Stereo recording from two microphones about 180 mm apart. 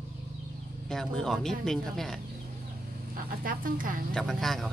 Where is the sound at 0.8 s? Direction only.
5° left (ahead or behind).